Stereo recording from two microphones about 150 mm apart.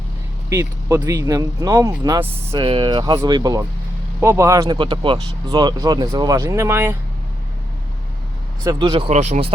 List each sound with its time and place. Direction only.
0.5 s speech: 20° right (ahead or behind)
2.5 s speech: 35° right (ahead or behind); by 4.8 s 20° right (ahead or behind)
4.8 s speech: 35° right (ahead or behind); by 6.9 s 15° right (ahead or behind)
8.6 s speech: 30° right (ahead or behind)
9.0 s speech: 50° right (ahead or behind)